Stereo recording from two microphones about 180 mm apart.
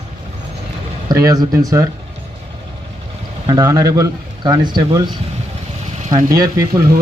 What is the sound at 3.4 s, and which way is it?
Speech, 20° right (ahead or behind).